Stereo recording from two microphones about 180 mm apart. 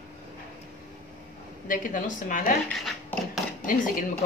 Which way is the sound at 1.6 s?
45° left (ahead or behind).